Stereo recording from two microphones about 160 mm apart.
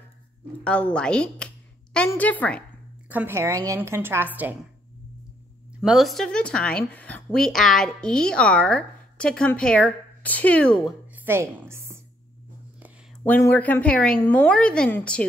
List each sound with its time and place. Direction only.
0.7 s a woman's voice: 5° left (ahead or behind)
3.1 s a woman's voice: 15° right (ahead or behind)
5.8 s speech: centre (ahead or behind)
11.1 s a woman's voice: 15° right (ahead or behind)
13.2 s a woman's voice: 15° left (ahead or behind)